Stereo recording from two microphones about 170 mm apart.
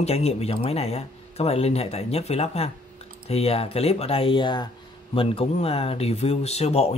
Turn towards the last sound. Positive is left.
turn(degrees=40)  # may be behind; listen again after turning